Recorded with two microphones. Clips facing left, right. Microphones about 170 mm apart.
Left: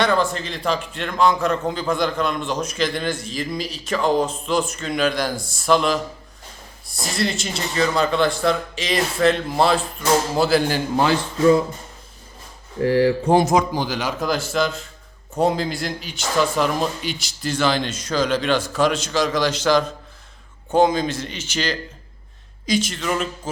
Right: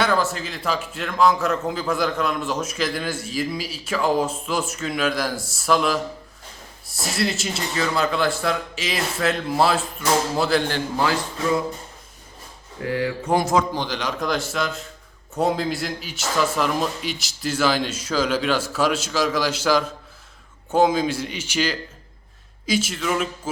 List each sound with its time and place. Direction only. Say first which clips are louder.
0.0 s a man's voice: left 2 dB; 5° right (ahead or behind)
12.8 s speech: left 8 dB; 35° left (ahead or behind)
13.4 s a man's voice: left 2 dB; 15° left (ahead or behind); by 23.3 s 5° right (ahead or behind)